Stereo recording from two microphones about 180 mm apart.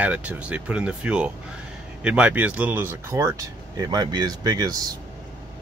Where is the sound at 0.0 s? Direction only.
10° right (ahead or behind).